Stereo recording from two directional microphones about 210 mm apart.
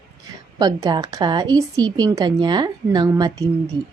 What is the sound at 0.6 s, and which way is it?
A woman's voice, 20° right (ahead or behind).